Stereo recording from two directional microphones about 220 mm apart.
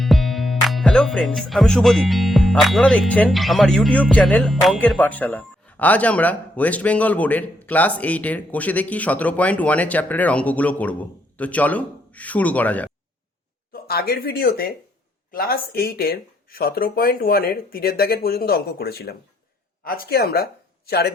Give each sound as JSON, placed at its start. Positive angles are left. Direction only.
{"t": 0.0, "sound": "speech", "side_deg": 0}
{"t": 13.8, "sound": "speech", "side_deg": 45}